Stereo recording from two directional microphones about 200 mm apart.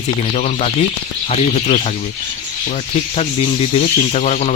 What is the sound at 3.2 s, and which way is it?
Speech, 30° left (ahead or behind).